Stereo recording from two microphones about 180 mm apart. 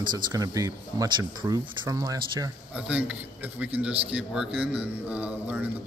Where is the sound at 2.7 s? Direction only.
5° right (ahead or behind).